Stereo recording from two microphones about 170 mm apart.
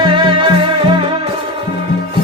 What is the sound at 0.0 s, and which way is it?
Music, 30° right (ahead or behind).